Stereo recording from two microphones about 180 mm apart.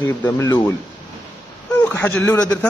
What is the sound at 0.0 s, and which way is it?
Speech, 10° left (ahead or behind).